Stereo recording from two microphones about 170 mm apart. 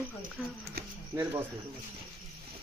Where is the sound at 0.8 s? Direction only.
70° right (ahead or behind).